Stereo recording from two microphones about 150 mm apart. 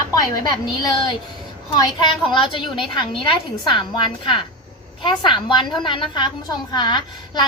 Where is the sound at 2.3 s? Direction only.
35° left (ahead or behind).